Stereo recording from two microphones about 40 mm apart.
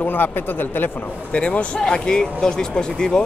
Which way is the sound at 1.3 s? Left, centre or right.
Left.